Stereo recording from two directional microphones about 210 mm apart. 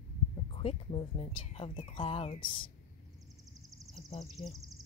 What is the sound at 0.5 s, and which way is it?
Speech, 25° left (ahead or behind).